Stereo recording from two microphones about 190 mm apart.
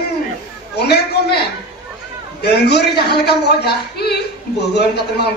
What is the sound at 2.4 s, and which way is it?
A man's voice, 60° left (ahead or behind).